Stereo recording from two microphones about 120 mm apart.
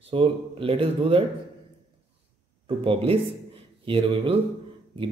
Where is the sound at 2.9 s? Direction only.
50° right (ahead or behind).